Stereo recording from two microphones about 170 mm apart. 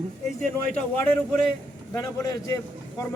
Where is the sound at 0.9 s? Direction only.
10° left (ahead or behind).